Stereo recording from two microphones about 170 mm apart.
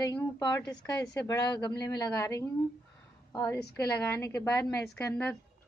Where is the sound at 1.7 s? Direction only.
80° left.